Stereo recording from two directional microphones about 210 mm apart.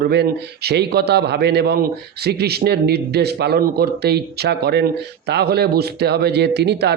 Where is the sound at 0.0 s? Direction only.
50° right (ahead or behind).